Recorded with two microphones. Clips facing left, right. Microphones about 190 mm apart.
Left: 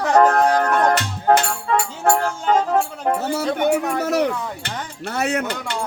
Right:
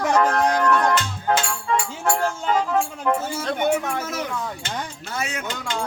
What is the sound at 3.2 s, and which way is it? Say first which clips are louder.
Speech: left 6 dB; 65° left (ahead or behind).